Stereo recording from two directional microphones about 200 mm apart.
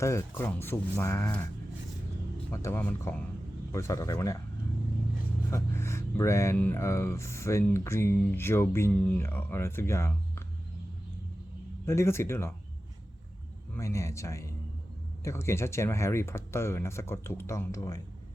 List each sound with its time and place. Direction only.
0.0 s speech: 10° left (ahead or behind)
2.5 s speech: 10° left (ahead or behind)
5.5 s speech: 15° left (ahead or behind)
11.9 s speech: 15° left (ahead or behind)
13.7 s speech: 15° left (ahead or behind)